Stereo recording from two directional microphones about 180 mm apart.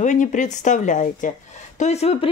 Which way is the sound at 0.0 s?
45° left (ahead or behind).